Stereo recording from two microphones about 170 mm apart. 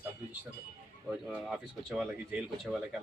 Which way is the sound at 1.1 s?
5° right (ahead or behind).